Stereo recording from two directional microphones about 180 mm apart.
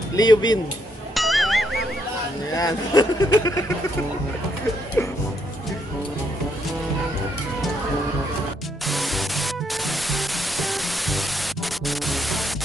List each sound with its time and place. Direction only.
0.1 s speech: 20° left (ahead or behind)
1.1 s music: centre (ahead or behind)
2.5 s speech: 20° left (ahead or behind)
5.0 s speech: 10° left (ahead or behind)
8.8 s music: centre (ahead or behind)